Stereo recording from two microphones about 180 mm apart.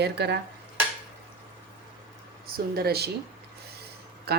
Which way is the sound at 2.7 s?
60° right (ahead or behind).